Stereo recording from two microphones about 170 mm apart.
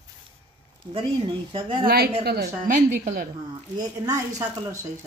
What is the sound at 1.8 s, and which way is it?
Speech, 65° right (ahead or behind).